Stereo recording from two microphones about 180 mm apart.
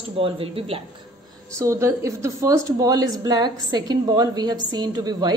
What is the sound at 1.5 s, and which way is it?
A woman's voice, 15° right (ahead or behind).